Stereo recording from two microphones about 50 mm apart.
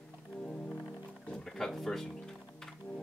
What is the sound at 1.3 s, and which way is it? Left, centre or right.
Music, centre.